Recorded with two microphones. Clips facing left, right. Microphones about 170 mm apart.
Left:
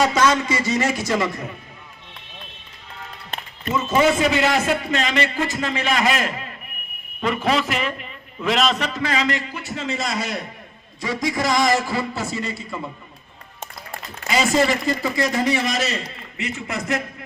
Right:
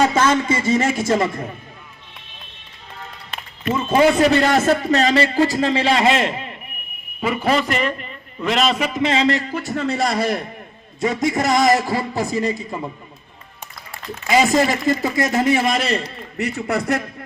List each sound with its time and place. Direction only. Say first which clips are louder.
0.6 s speech: right 3 dB; 50° right (ahead or behind)
3.8 s a man's voice: right 3 dB; 30° right (ahead or behind)
7.2 s a man's voice: right 2 dB; 5° right (ahead or behind)
8.9 s a man's voice: right 5 dB; 20° right (ahead or behind); by 9.6 s 40° right (ahead or behind)
9.6 s a man's voice: right 6 dB; 60° right (ahead or behind); by 12.5 s 40° right (ahead or behind)
14.3 s a man's voice: right 3 dB; 45° right (ahead or behind); by 17.0 s 60° right (ahead or behind)